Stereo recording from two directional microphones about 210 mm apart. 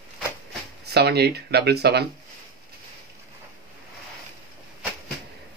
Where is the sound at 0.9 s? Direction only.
50° right (ahead or behind).